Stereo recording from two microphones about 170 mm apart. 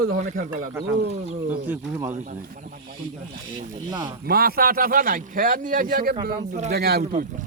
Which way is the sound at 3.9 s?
25° right (ahead or behind).